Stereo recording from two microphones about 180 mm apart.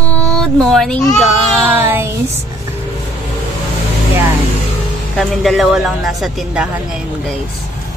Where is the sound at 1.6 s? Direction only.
10° right (ahead or behind).